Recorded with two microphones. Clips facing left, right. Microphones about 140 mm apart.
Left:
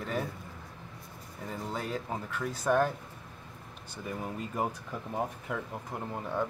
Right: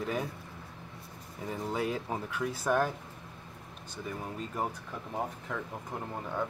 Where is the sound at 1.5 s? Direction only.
10° right (ahead or behind).